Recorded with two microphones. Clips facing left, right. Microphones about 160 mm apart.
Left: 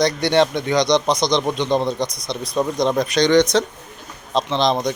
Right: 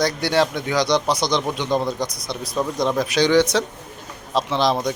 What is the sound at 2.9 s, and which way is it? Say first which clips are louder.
A man's voice: left 1 dB; 5° right (ahead or behind).